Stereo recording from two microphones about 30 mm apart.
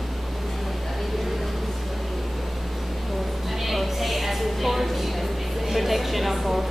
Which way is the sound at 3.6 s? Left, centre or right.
Centre.